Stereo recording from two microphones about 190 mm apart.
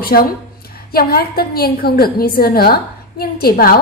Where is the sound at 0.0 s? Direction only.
55° left (ahead or behind).